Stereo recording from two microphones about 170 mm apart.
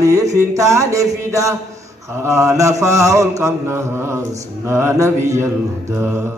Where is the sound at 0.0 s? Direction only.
20° right (ahead or behind).